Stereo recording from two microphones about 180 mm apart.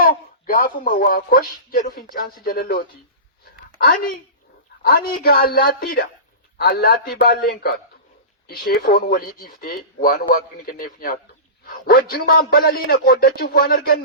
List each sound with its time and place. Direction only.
0.0 s a man's voice: 55° left (ahead or behind)
11.6 s a sound: 55° left (ahead or behind)
12.1 s speech: 55° left (ahead or behind)